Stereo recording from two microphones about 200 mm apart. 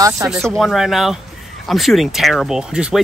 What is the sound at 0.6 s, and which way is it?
Speech, centre (ahead or behind).